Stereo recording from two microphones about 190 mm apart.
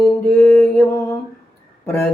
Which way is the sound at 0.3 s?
5° left (ahead or behind).